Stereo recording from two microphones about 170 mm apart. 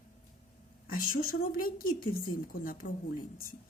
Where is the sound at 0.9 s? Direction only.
55° left (ahead or behind).